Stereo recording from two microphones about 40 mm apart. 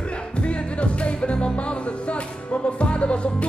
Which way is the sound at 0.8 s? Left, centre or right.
Left.